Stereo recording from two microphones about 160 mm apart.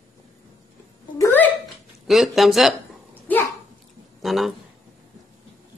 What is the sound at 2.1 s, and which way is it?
Speech, centre (ahead or behind).